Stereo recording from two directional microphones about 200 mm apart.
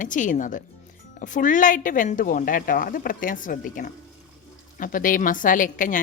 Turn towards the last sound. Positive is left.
turn(degrees=40)  # may be behind; listen again after turning